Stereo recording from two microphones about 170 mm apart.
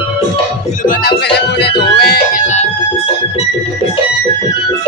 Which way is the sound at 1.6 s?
70° left (ahead or behind).